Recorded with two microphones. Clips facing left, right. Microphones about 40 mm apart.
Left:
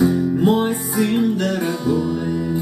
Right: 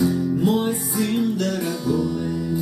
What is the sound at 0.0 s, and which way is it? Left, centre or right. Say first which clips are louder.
Music: left 4 dB; left.